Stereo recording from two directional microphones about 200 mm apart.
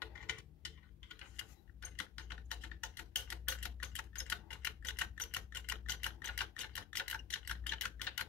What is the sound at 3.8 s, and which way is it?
Typewriter, 5° left (ahead or behind).